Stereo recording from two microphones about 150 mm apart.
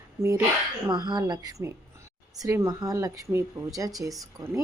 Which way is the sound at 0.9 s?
25° right (ahead or behind).